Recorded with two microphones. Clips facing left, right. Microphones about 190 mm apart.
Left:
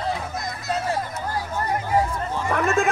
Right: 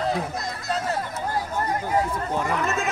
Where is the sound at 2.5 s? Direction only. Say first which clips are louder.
Left 4 dB; 50° left (ahead or behind).